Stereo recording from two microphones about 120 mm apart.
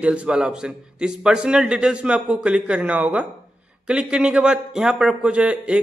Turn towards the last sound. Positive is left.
turn(degrees=-10)  # may be behind; listen again after turning